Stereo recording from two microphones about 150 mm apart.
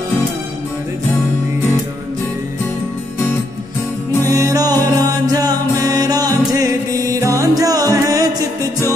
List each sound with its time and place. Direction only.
4.3 s music: 20° right (ahead or behind)